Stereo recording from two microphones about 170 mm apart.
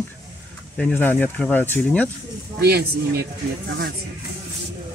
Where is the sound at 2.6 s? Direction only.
70° right (ahead or behind).